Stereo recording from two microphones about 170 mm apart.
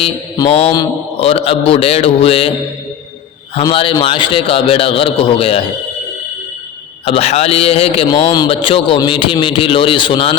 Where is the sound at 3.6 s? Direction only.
30° left (ahead or behind).